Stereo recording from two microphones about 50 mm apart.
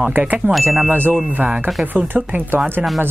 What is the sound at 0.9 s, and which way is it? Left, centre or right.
Chime, right.